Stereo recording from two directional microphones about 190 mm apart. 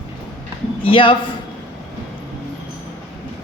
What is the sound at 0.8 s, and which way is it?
Speech, 25° left (ahead or behind).